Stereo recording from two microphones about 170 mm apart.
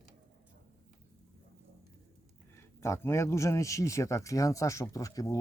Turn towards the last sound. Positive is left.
turn(degrees=20)  # may be behind; listen again after turning